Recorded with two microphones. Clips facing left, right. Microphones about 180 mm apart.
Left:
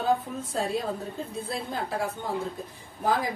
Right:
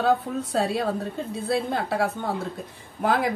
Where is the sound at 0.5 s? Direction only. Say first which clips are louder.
Right 4 dB; 70° right (ahead or behind).